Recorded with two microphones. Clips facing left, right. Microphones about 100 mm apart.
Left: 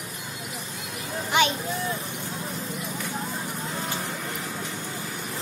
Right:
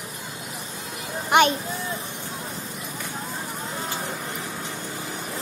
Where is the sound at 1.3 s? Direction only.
55° right (ahead or behind).